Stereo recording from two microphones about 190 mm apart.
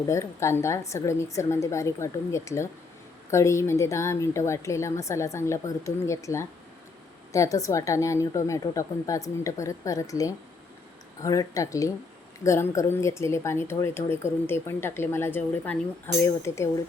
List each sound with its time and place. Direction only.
0.1 s speech: 15° left (ahead or behind)